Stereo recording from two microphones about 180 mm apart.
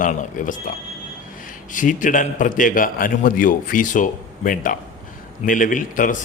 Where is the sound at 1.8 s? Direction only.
45° left (ahead or behind).